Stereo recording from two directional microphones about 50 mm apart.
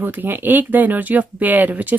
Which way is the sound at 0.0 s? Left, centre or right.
Right.